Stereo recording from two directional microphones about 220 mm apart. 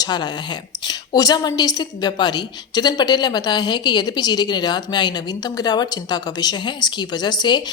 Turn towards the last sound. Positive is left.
turn(degrees=20)  # may be behind; listen again after turning